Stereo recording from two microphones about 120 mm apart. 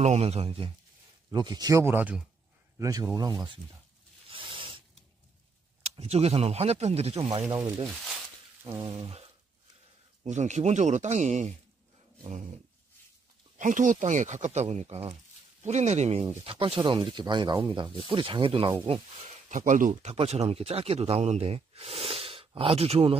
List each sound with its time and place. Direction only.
0.0 s speech: 65° right (ahead or behind)
1.3 s speech: 35° right (ahead or behind); by 2.2 s 15° right (ahead or behind)
2.8 s speech: 30° right (ahead or behind)
4.3 s zipper: 45° right (ahead or behind)
5.9 s speech: 55° right (ahead or behind)
7.8 s speech: centre (ahead or behind)
8.8 s speech: 45° right (ahead or behind)
10.2 s speech: 75° right (ahead or behind)
13.6 s speech: 90° right; by 15.1 s 60° right (ahead or behind)
15.6 s speech: 75° right (ahead or behind)
16.4 s speech: 50° right (ahead or behind)
19.5 s speech: 90° right; by 23.1 s 55° right (ahead or behind)